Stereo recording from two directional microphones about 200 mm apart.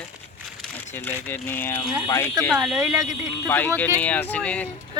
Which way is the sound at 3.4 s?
10° left (ahead or behind).